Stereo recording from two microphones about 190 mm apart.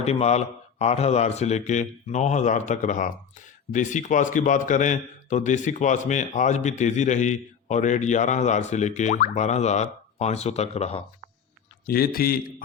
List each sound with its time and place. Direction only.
0.0 s a man's voice: 35° left (ahead or behind)
11.9 s a man's voice: 50° left (ahead or behind)